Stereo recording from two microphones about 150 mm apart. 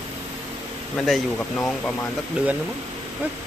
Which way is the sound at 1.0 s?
Centre (ahead or behind).